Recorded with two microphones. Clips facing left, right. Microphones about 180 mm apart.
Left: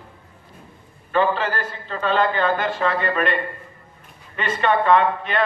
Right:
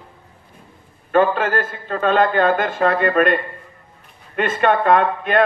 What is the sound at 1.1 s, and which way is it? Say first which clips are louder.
A man's voice: right 4 dB; 50° right (ahead or behind).